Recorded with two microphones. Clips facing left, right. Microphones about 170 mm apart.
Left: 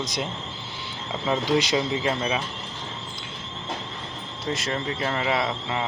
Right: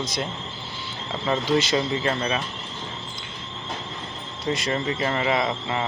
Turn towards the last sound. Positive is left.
turn(degrees=0)  # may be behind; listen again after turning